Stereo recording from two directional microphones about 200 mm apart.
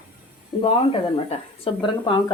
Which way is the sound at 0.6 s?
30° left (ahead or behind).